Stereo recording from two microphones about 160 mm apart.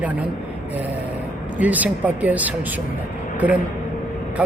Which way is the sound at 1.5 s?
10° right (ahead or behind).